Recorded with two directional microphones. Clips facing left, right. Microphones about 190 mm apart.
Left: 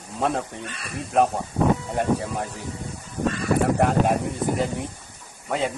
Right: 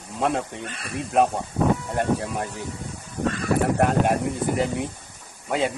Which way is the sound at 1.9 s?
Centre (ahead or behind).